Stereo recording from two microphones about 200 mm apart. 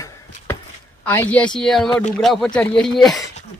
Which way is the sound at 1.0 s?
10° left (ahead or behind).